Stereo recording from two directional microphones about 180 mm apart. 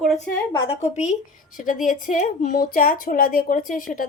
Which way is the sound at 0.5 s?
35° left (ahead or behind).